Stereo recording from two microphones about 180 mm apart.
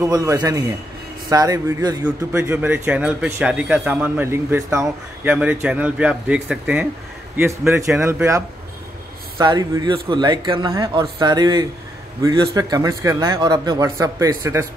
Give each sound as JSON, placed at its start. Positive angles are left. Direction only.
{"t": 0.0, "sound": "a man's voice", "side_deg": -20}